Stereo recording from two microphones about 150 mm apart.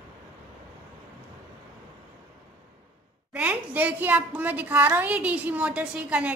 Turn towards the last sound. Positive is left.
turn(degrees=-10)  # may be behind; listen again after turning